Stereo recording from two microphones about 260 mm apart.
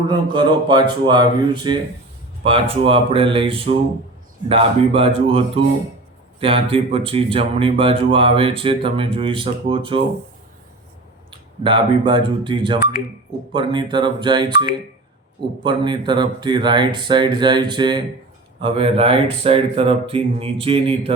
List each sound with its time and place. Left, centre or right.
0.1 s speech: centre
11.3 s speech: centre